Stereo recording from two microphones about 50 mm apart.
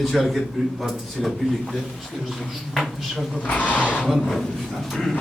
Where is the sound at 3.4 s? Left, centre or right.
Left.